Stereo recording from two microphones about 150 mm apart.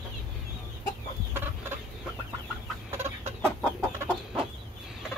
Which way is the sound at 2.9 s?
15° right (ahead or behind).